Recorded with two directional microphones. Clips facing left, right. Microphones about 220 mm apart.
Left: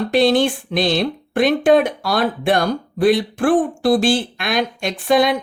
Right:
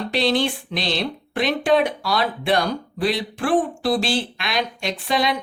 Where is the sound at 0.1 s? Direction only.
50° left (ahead or behind).